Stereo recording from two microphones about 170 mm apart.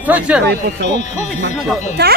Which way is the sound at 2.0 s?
70° right (ahead or behind).